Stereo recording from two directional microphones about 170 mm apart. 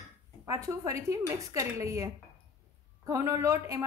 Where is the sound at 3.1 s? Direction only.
20° right (ahead or behind).